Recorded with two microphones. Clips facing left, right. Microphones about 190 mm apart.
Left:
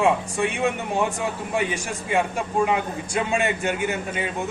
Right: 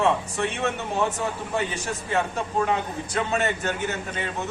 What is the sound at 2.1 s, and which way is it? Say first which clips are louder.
A man's voice: left 3 dB; 10° left (ahead or behind).